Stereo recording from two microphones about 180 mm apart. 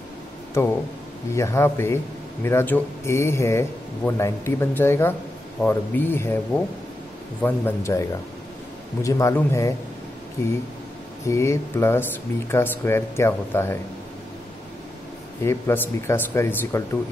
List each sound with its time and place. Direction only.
0.6 s speech: 15° left (ahead or behind)
7.4 s speech: 15° left (ahead or behind)
11.2 s speech: 15° left (ahead or behind)
15.4 s speech: 15° left (ahead or behind)